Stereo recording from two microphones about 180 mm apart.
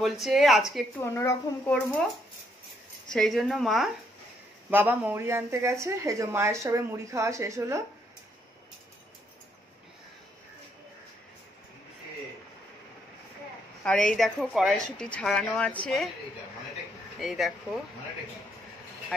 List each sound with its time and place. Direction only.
0.0 s a woman's voice: centre (ahead or behind)
1.1 s a woman's voice: 10° left (ahead or behind)
3.1 s a woman's voice: centre (ahead or behind)
4.6 s a woman's voice: 10° right (ahead or behind)
13.8 s a woman's voice: 5° left (ahead or behind)
17.2 s a woman's voice: centre (ahead or behind)